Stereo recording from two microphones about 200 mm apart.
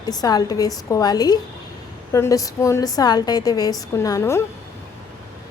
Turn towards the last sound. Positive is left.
turn(degrees=15)  # may be behind; listen again after turning